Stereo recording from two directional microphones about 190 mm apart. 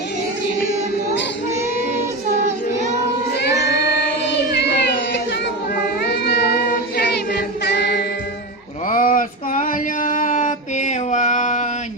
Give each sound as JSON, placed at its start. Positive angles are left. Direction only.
{"t": 4.5, "sound": "a sound", "side_deg": 65}
{"t": 5.8, "sound": "child singing", "side_deg": 55}
{"t": 8.9, "sound": "male singing", "side_deg": 45}